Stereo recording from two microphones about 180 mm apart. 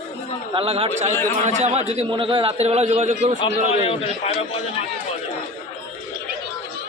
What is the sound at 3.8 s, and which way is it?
A man's voice, 30° left (ahead or behind).